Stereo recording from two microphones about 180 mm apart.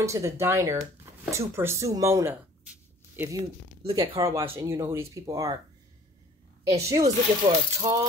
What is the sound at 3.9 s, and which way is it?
Coin, 20° right (ahead or behind).